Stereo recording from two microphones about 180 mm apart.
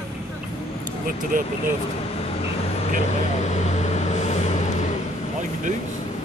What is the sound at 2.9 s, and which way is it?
Vehicle, 40° left (ahead or behind).